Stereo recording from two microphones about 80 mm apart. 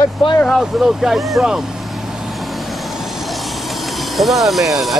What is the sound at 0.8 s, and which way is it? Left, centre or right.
Speech, centre.